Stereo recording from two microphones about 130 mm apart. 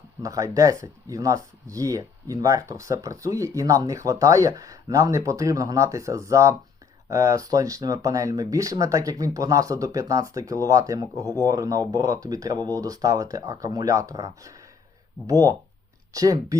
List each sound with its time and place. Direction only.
0.2 s speech: 25° right (ahead or behind)